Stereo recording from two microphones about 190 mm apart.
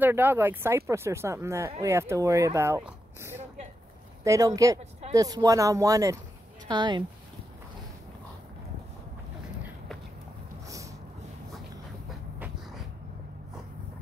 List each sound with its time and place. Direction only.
0.0 s speech: 10° right (ahead or behind)